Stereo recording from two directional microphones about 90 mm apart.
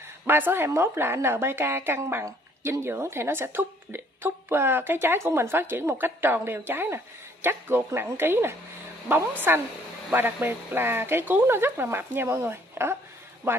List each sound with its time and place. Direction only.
0.3 s a woman's voice: 25° right (ahead or behind)